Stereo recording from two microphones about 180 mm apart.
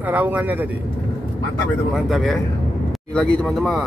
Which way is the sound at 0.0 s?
10° right (ahead or behind).